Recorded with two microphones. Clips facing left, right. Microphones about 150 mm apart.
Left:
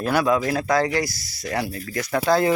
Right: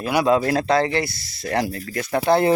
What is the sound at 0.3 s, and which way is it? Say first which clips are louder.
Speech: right 3 dB; 30° right (ahead or behind).